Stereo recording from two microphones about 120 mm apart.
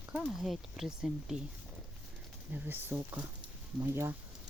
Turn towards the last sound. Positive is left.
turn(degrees=-20)  # may be behind; listen again after turning